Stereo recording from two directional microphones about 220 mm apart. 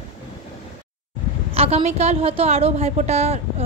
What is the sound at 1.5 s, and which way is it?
A woman's voice, 25° right (ahead or behind).